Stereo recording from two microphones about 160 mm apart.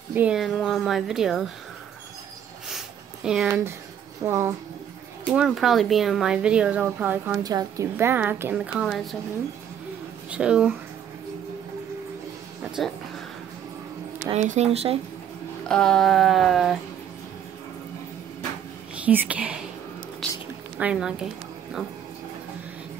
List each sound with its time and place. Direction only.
0.1 s speech: 5° right (ahead or behind)
3.3 s a woman's voice: 5° right (ahead or behind)
5.3 s speech: 5° right (ahead or behind)
7.4 s a woman's voice: 20° right (ahead or behind); by 9.1 s centre (ahead or behind)
10.3 s speech: 5° right (ahead or behind)
14.3 s speech: 45° right (ahead or behind)
15.7 s speech: 5° left (ahead or behind)
19.0 s a woman's voice: 10° right (ahead or behind)
20.7 s speech: 5° right (ahead or behind)